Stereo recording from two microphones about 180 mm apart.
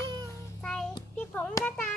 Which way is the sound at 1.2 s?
10° left (ahead or behind).